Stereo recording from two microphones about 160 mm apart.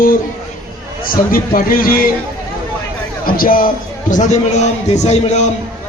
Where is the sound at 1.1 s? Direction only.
60° left (ahead or behind).